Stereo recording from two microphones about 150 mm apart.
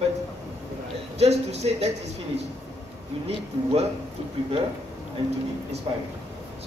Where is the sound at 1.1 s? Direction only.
45° right (ahead or behind).